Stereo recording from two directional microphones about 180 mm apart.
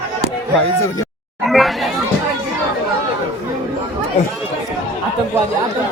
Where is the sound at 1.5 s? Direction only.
Centre (ahead or behind).